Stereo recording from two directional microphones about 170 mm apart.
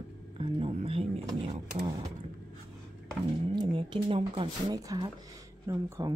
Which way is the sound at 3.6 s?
30° right (ahead or behind).